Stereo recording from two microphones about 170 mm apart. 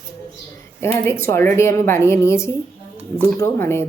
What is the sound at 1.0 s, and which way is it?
A woman's voice, 15° left (ahead or behind).